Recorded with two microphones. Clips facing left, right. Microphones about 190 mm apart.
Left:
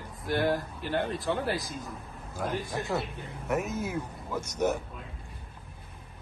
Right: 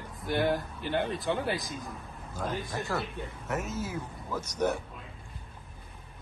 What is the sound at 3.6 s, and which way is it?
Speech, 60° left (ahead or behind).